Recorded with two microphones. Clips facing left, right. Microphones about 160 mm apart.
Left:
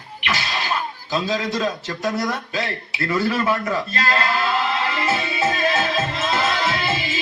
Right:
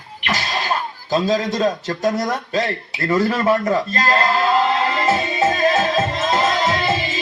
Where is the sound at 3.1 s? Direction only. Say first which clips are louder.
Right 4 dB; 30° right (ahead or behind).